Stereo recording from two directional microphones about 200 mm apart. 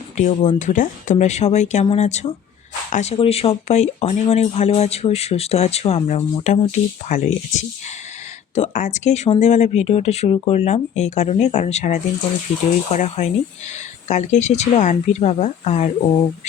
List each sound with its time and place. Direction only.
0.2 s speech: 40° left (ahead or behind)